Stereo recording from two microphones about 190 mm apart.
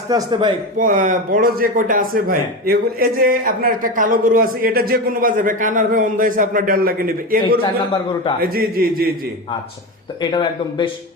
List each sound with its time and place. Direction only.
0.1 s a man's voice: 20° right (ahead or behind)
0.8 s speech: 45° right (ahead or behind)
10.2 s speech: 25° left (ahead or behind)